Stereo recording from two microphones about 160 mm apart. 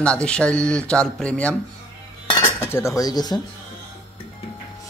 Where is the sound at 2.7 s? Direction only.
20° left (ahead or behind).